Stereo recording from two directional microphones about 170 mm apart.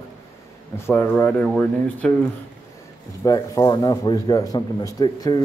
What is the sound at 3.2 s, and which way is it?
A man's voice, 20° left (ahead or behind).